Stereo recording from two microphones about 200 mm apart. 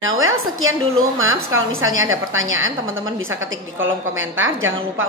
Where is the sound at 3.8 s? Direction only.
80° right.